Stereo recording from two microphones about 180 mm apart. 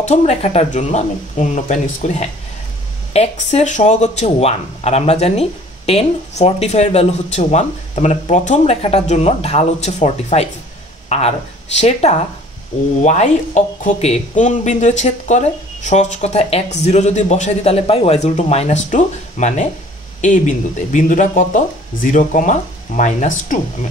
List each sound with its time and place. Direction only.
0.0 s speech: 40° left (ahead or behind)